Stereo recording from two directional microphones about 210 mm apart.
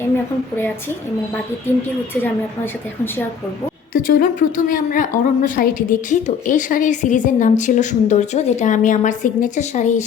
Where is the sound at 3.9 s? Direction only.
40° left (ahead or behind).